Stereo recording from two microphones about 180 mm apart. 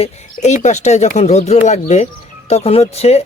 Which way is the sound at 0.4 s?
40° left (ahead or behind).